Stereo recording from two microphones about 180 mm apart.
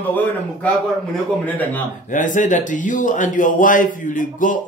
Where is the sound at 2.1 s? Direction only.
45° left (ahead or behind).